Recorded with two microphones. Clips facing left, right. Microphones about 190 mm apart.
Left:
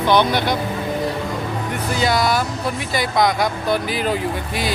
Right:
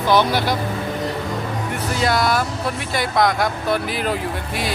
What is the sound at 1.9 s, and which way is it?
Speech, centre (ahead or behind).